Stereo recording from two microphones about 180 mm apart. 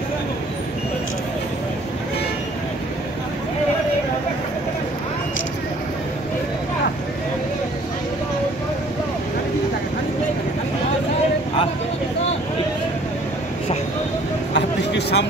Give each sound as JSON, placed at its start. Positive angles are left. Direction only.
{"t": 14.5, "sound": "vehicle", "side_deg": 70}